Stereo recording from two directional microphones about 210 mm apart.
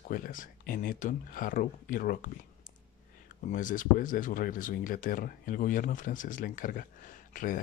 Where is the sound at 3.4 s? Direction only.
40° left (ahead or behind).